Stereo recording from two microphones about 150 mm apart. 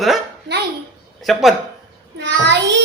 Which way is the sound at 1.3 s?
Centre (ahead or behind).